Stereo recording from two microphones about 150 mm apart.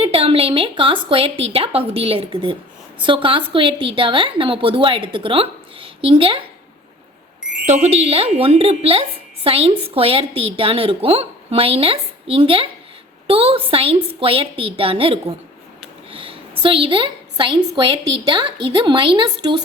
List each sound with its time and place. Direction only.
0.0 s a woman's voice: 40° right (ahead or behind)
7.7 s a woman's voice: 45° right (ahead or behind)